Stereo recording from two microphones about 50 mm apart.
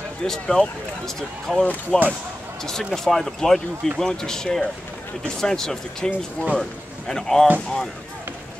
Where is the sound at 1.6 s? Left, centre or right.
Left.